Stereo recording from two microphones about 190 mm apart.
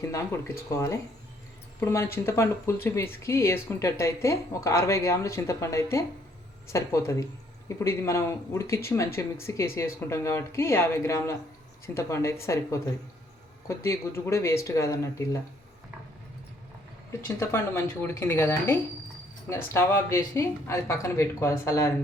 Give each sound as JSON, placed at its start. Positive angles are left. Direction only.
{"t": 0.1, "sound": "speech", "side_deg": 15}
{"t": 17.1, "sound": "speech", "side_deg": 15}